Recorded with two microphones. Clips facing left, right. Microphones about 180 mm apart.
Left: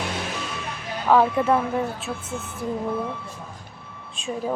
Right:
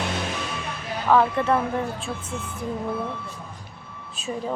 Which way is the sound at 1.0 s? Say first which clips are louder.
Left 1 dB; 10° left (ahead or behind).